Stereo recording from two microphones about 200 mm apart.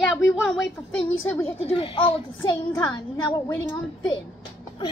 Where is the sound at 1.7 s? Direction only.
25° left (ahead or behind).